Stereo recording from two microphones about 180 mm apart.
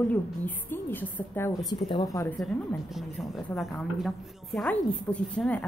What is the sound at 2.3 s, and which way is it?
A woman's voice, centre (ahead or behind).